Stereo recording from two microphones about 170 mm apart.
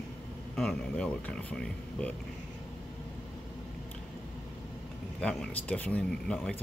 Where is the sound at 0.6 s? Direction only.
5° left (ahead or behind).